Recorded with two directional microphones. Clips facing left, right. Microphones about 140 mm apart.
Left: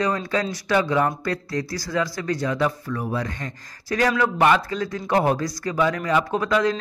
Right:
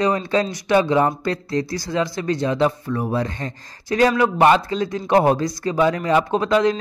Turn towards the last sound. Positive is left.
turn(degrees=-25)  # may be behind; listen again after turning